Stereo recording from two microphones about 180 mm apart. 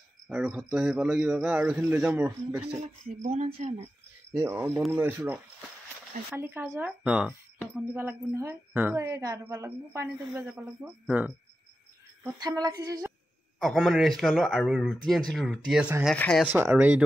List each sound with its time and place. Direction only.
0.3 s a woman's voice: 5° right (ahead or behind)
2.6 s speech: 35° right (ahead or behind)
4.3 s a woman's voice: 15° right (ahead or behind)
12.4 s speech: 20° right (ahead or behind)
13.6 s speech: centre (ahead or behind)
16.4 s a woman's voice: 10° right (ahead or behind)